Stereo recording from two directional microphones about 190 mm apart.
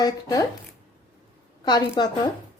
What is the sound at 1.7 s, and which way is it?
Speech, 20° left (ahead or behind).